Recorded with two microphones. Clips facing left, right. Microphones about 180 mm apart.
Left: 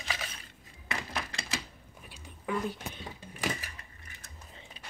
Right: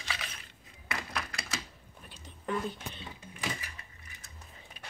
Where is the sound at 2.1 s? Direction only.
10° left (ahead or behind).